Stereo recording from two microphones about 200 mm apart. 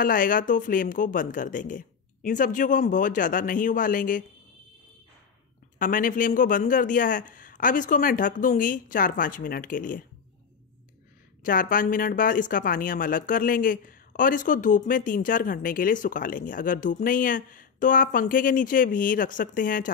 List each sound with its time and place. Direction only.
0.0 s a man's voice: 45° left (ahead or behind)
5.8 s a man's voice: 40° left (ahead or behind)
11.4 s speech: 45° left (ahead or behind)